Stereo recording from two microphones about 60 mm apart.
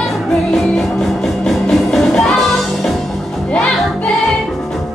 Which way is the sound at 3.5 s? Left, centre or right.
Centre.